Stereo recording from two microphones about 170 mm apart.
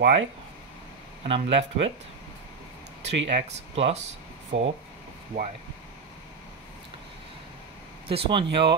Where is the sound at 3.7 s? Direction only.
35° right (ahead or behind).